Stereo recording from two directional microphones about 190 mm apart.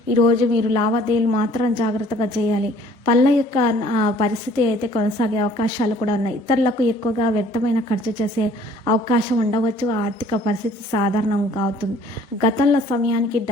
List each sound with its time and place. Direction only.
0.2 s a woman's voice: 25° left (ahead or behind)